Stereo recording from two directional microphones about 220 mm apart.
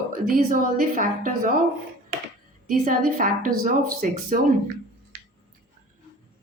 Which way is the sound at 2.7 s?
40° right (ahead or behind).